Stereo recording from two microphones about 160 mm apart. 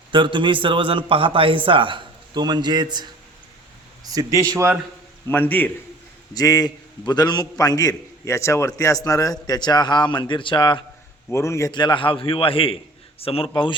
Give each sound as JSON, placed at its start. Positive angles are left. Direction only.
{"t": 0.1, "sound": "a man's voice", "side_deg": -30}
{"t": 5.3, "sound": "a man's voice", "side_deg": 10}
{"t": 6.3, "sound": "a man's voice", "side_deg": 25}
{"t": 11.3, "sound": "a man's voice", "side_deg": 15}